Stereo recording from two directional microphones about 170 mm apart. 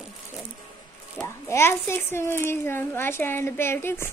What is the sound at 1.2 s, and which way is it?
A child's voice, 15° left (ahead or behind).